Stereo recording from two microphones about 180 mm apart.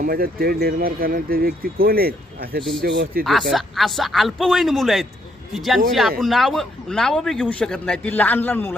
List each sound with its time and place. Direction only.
0.0 s speech: 55° right (ahead or behind)
3.5 s speech: centre (ahead or behind)